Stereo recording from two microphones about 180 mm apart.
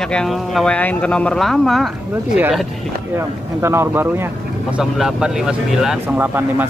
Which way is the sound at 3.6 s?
15° right (ahead or behind).